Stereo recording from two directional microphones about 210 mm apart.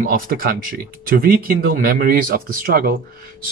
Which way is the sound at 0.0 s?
45° right (ahead or behind).